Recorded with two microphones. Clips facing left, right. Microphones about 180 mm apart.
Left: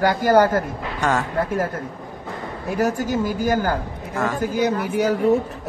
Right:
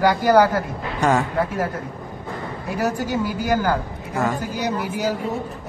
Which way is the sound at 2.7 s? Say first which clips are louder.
Left 2 dB; 45° left (ahead or behind).